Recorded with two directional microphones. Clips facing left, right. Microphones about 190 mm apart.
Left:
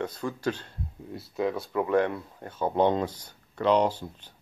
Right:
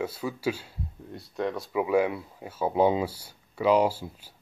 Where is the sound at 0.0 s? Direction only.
5° right (ahead or behind).